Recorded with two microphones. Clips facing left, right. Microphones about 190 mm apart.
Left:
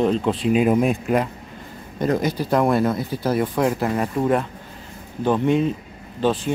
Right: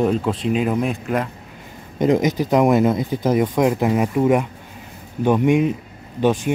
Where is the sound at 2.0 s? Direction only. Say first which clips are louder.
Right 4 dB; 20° right (ahead or behind).